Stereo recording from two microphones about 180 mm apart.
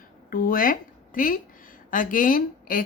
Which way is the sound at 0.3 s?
50° left (ahead or behind).